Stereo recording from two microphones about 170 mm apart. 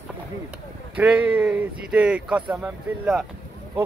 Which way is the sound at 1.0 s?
5° right (ahead or behind).